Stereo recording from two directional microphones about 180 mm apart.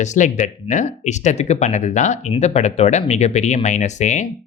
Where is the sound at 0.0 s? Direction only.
40° left (ahead or behind).